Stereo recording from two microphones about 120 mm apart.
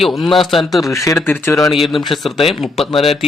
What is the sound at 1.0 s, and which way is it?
Speech, 20° left (ahead or behind).